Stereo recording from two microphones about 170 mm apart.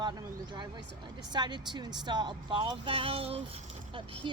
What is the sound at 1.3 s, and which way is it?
Speech, 25° right (ahead or behind).